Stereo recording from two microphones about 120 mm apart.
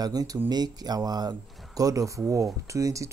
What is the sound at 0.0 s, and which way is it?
Speech, 30° right (ahead or behind).